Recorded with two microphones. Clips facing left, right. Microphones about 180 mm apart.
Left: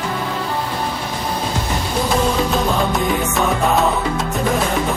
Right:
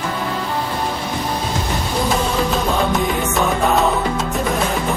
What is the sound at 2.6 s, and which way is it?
Music, centre (ahead or behind).